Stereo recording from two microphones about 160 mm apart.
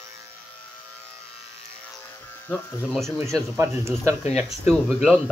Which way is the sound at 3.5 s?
15° right (ahead or behind).